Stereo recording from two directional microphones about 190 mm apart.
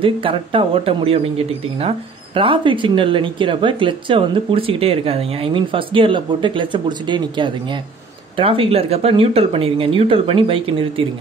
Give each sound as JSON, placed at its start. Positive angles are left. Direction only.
{"t": 0.0, "sound": "speech", "side_deg": -30}